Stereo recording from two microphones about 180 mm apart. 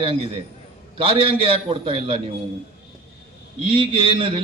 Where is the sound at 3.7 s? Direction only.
30° right (ahead or behind).